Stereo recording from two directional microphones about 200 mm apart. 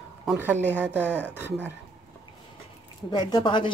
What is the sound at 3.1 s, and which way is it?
Speech, 20° left (ahead or behind).